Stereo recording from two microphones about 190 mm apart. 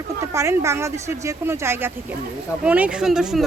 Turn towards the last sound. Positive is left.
turn(degrees=-5)  # may be behind; listen again after turning